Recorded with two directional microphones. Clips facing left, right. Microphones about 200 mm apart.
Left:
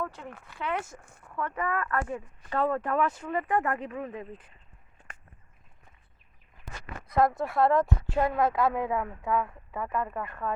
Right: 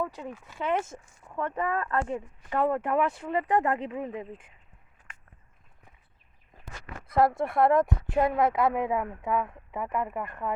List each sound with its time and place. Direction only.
0.0 s speech: 15° right (ahead or behind)
7.1 s speech: 25° right (ahead or behind)